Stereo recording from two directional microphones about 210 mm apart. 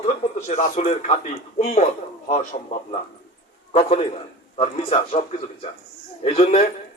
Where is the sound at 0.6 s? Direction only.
35° left (ahead or behind).